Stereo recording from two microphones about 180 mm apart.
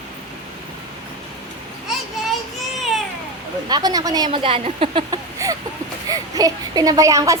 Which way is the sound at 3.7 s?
20° right (ahead or behind).